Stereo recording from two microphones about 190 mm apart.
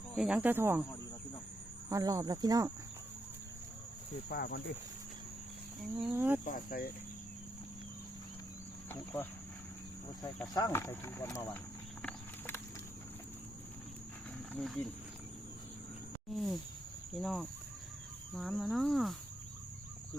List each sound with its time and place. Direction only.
0.2 s speech: 5° right (ahead or behind)
1.9 s speech: 20° right (ahead or behind)
4.3 s speech: 55° left (ahead or behind)
6.1 s speech: 10° right (ahead or behind)
6.4 s cricket: 50° left (ahead or behind)
10.4 s speech: 20° left (ahead or behind)
14.5 s speech: centre (ahead or behind)
16.3 s cricket: centre (ahead or behind)